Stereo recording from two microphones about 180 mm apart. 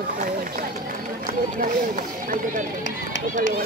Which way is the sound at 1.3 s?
50° right (ahead or behind).